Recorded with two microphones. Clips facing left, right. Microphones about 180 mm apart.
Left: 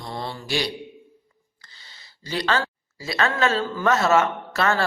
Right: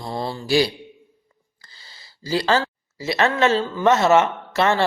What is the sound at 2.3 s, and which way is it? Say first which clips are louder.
Speech: right 4 dB; 30° right (ahead or behind).